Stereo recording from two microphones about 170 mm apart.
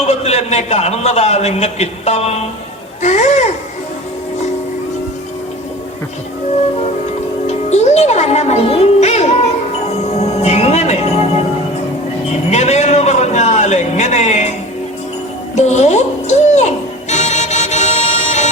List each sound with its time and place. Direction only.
0.1 s a man's voice: 40° left (ahead or behind)
7.4 s music: 40° left (ahead or behind)
12.5 s a man's voice: 40° left (ahead or behind)
15.5 s music: 40° left (ahead or behind)